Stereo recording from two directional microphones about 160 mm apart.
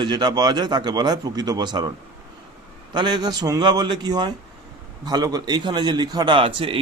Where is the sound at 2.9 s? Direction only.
25° right (ahead or behind).